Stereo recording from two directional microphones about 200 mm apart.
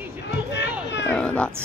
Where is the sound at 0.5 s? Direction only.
60° left (ahead or behind).